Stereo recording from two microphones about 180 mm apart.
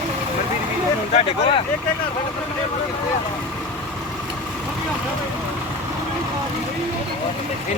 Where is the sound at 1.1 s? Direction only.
30° left (ahead or behind).